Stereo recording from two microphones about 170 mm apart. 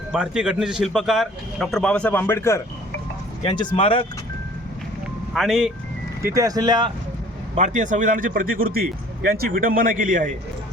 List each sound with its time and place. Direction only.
0.1 s a man's voice: 5° right (ahead or behind); by 2.6 s 15° left (ahead or behind)
3.4 s speech: 30° left (ahead or behind)
5.3 s a man's voice: centre (ahead or behind)
6.2 s speech: 20° right (ahead or behind)
7.5 s a man's voice: 45° right (ahead or behind)